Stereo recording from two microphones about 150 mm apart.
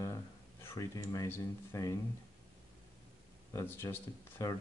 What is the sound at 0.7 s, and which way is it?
Speech, 20° left (ahead or behind).